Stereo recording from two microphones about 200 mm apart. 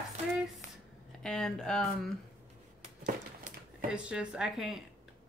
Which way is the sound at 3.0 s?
40° right (ahead or behind).